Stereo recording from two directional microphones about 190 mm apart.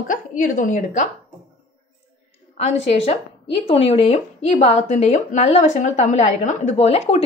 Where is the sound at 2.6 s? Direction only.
35° left (ahead or behind).